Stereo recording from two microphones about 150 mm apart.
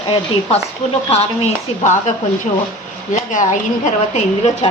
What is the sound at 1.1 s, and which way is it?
Speech, 45° left (ahead or behind).